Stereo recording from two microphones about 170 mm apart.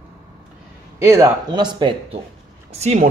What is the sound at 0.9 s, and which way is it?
Speech, 15° right (ahead or behind).